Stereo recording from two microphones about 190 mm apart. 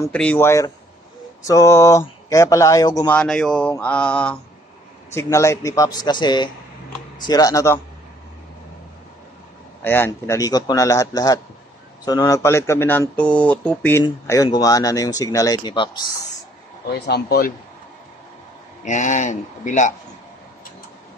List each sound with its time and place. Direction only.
0.0 s speech: 10° left (ahead or behind)
3.1 s speech: 5° left (ahead or behind)
9.8 s speech: 10° left (ahead or behind)
17.0 s speech: 55° left (ahead or behind)
18.9 s speech: 40° left (ahead or behind)